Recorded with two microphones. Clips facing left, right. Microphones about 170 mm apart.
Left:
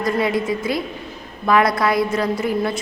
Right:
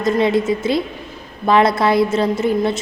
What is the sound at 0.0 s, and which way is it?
A woman's voice, 25° right (ahead or behind).